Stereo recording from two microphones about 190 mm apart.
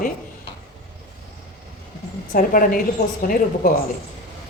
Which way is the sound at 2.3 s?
45° left (ahead or behind).